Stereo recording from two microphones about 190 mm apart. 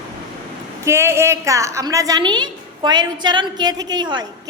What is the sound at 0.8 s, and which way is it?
A woman's voice, 15° right (ahead or behind).